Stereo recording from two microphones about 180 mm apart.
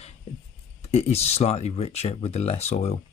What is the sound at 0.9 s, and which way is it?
Speech, 35° left (ahead or behind).